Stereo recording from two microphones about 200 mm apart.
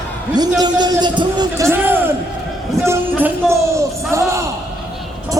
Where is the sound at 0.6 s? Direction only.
20° right (ahead or behind).